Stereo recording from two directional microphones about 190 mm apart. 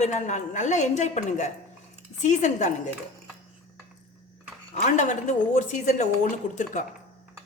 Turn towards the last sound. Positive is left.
turn(degrees=40)  # may be behind; listen again after turning